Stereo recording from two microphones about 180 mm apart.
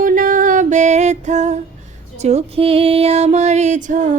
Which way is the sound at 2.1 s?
35° right (ahead or behind).